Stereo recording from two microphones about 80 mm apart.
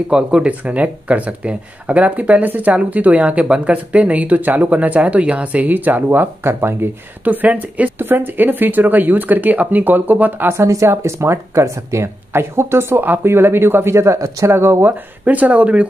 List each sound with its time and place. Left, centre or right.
0.1 s speech: centre
10.5 s speech: right; by 15.8 s centre